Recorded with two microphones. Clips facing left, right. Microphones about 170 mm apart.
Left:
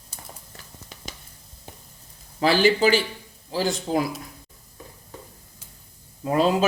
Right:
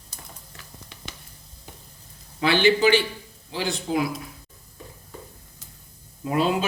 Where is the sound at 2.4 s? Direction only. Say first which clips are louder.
Left 1 dB; 40° left (ahead or behind).